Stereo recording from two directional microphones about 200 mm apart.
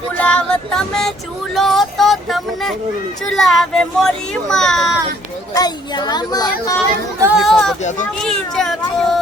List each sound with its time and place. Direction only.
0.2 s a sound: 5° left (ahead or behind)
1.5 s speech: centre (ahead or behind)
5.5 s a child's voice: 20° left (ahead or behind)
7.2 s speech: 5° right (ahead or behind)
7.8 s a child's voice: 35° left (ahead or behind)
8.2 s speech: centre (ahead or behind)